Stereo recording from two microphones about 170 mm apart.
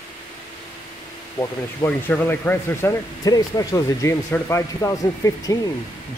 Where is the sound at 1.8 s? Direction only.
10° left (ahead or behind).